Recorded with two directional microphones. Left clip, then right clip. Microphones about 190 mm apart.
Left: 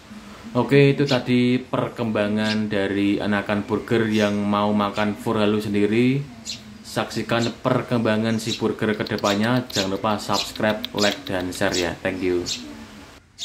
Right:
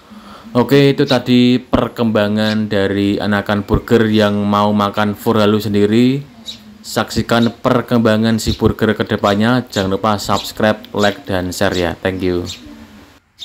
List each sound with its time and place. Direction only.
0.5 s speech: 35° right (ahead or behind)